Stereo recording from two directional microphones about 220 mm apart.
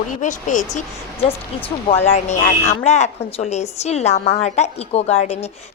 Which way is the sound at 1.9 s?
30° left (ahead or behind).